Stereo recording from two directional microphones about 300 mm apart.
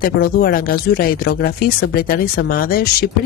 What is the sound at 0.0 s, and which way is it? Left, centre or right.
Speech, left.